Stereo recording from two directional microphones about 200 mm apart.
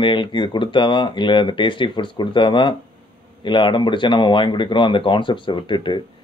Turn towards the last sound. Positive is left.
turn(degrees=25)  # may be behind; listen again after turning